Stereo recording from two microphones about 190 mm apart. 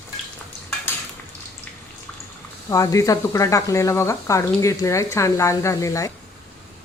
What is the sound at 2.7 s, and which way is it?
Speech, 15° left (ahead or behind).